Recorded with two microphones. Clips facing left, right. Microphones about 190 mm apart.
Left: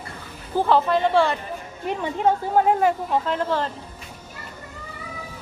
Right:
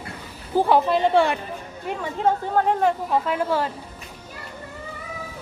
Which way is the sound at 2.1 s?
10° left (ahead or behind).